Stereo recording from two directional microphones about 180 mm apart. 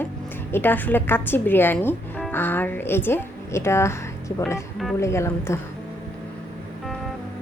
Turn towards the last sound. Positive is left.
turn(degrees=15)  # may be behind; listen again after turning